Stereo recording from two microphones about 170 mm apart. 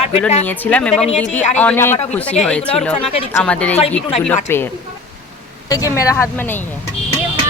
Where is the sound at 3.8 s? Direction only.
40° left (ahead or behind).